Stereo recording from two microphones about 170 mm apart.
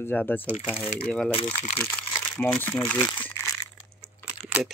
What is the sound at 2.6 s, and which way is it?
Speech, 15° left (ahead or behind).